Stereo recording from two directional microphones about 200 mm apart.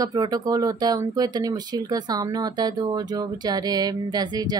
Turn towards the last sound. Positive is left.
turn(degrees=-20)  # may be behind; listen again after turning